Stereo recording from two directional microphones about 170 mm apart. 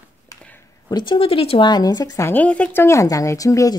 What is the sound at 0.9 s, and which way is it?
A woman's voice, 25° left (ahead or behind).